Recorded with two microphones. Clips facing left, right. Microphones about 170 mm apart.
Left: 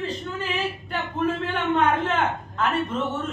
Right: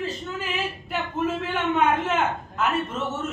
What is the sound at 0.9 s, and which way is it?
A man's voice, 5° right (ahead or behind).